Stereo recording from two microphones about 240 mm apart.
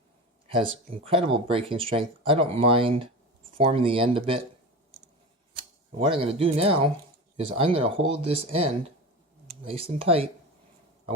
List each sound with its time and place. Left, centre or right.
1.0 s speech: right
6.0 s speech: right
9.7 s speech: right